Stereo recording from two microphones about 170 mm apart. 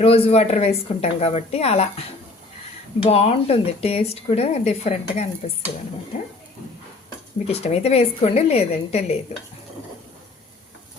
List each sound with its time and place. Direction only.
0.0 s speech: 35° left (ahead or behind)
7.4 s speech: 40° left (ahead or behind)